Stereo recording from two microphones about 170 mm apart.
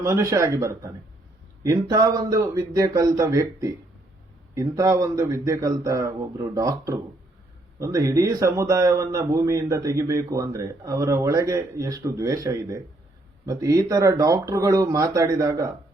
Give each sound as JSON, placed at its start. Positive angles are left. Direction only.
{"t": 0.0, "sound": "a man's voice", "side_deg": -15}